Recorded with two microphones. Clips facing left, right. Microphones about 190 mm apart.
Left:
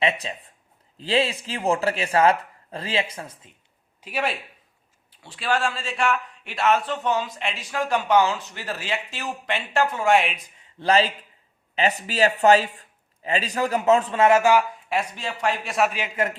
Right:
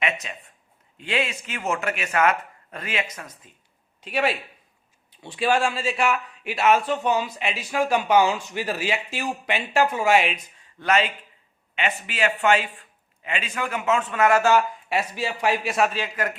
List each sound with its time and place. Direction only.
0.0 s speech: 30° left (ahead or behind)
4.0 s speech: centre (ahead or behind)
5.1 s a man's voice: 15° right (ahead or behind); by 10.4 s centre (ahead or behind)
10.6 s a sound: 30° left (ahead or behind)
11.7 s speech: 35° left (ahead or behind); by 14.6 s 15° left (ahead or behind)
14.8 s a man's voice: 5° right (ahead or behind)
15.9 s a man's voice: 20° left (ahead or behind)